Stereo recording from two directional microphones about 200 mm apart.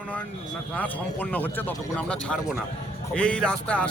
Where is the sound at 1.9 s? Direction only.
5° left (ahead or behind).